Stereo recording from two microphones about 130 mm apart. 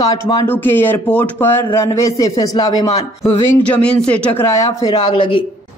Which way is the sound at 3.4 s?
10° left (ahead or behind).